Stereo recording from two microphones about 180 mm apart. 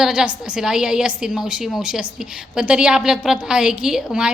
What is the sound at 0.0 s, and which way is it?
A woman's voice, 5° right (ahead or behind).